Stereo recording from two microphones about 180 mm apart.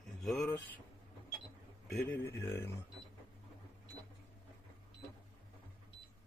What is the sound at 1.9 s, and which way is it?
Speech, 5° left (ahead or behind).